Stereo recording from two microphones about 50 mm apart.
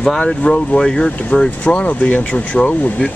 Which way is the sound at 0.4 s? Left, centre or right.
Left.